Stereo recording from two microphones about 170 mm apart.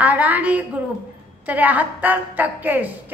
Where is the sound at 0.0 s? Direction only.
10° right (ahead or behind).